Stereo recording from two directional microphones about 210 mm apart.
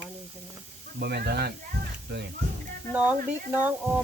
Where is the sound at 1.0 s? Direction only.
50° right (ahead or behind).